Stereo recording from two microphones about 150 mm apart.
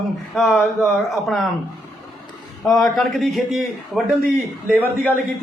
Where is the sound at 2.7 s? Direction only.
Centre (ahead or behind).